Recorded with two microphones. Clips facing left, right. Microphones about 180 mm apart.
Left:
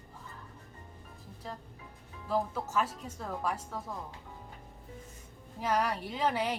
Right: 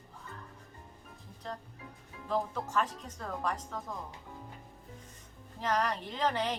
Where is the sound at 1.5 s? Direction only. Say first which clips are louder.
Right 2 dB; 5° left (ahead or behind).